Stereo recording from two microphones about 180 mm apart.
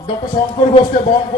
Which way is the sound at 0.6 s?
40° left (ahead or behind).